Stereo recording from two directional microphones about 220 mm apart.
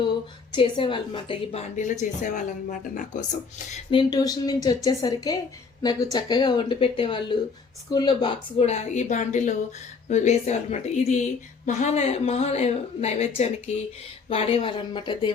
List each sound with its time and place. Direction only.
0.5 s a woman's voice: 20° left (ahead or behind)
3.9 s a woman's voice: 15° left (ahead or behind)